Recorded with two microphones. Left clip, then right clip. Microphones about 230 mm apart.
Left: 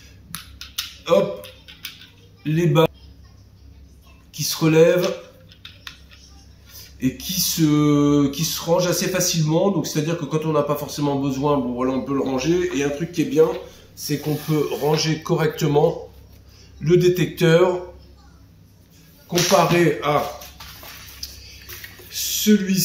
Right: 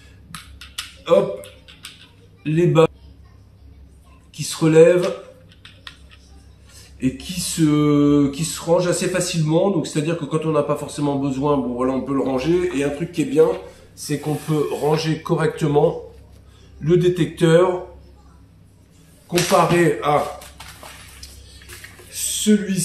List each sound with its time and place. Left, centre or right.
0.3 s a sound: centre
2.4 s speech: centre
4.3 s speech: centre
6.7 s a man's voice: centre
19.2 s speech: centre
22.1 s a sound: centre